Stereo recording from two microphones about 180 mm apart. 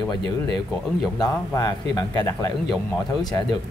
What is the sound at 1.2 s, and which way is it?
A man's voice, 20° left (ahead or behind).